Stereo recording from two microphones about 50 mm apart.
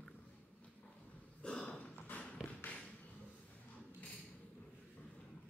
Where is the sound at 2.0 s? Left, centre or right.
Left.